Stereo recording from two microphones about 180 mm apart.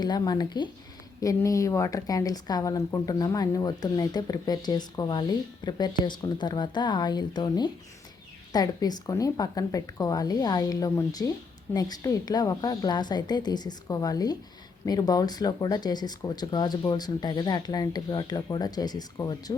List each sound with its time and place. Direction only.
0.0 s speech: 25° left (ahead or behind)